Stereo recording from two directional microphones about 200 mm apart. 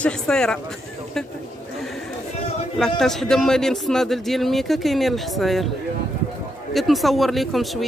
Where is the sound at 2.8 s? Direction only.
Centre (ahead or behind).